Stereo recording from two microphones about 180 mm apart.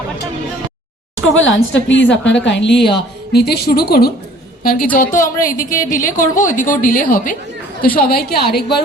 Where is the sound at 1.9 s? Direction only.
85° left.